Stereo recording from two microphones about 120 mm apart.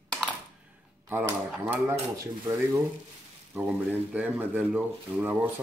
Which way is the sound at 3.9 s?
10° right (ahead or behind).